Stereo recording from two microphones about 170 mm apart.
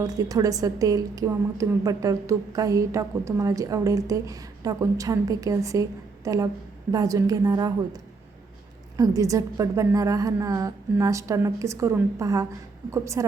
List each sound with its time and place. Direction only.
0.0 s a woman's voice: 20° right (ahead or behind)
9.0 s a woman's voice: 20° right (ahead or behind)